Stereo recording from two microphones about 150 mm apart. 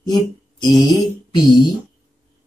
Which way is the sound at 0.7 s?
30° left (ahead or behind).